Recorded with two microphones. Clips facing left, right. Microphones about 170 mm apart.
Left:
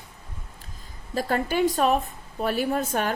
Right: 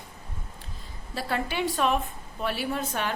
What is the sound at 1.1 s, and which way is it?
A woman's voice, 45° left (ahead or behind).